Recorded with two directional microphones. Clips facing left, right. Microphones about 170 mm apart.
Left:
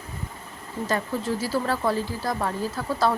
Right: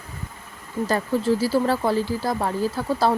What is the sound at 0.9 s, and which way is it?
Speech, 30° right (ahead or behind).